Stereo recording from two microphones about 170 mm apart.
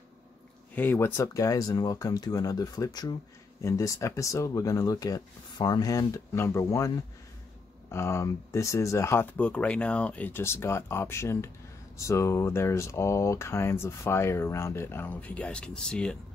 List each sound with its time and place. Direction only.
0.7 s speech: 15° left (ahead or behind)
7.9 s speech: 15° left (ahead or behind)